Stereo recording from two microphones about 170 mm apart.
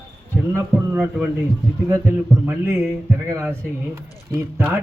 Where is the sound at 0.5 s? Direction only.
10° right (ahead or behind).